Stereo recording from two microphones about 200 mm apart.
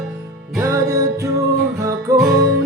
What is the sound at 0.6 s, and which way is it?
Music, 15° right (ahead or behind).